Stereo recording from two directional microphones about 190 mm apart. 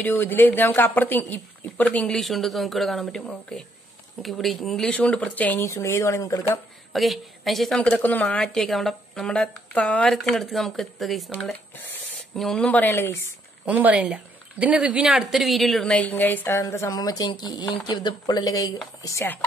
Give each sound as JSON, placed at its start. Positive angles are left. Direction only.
{"t": 0.0, "sound": "a woman's voice", "side_deg": 10}
{"t": 6.9, "sound": "a woman's voice", "side_deg": 0}
{"t": 13.7, "sound": "a woman's voice", "side_deg": -5}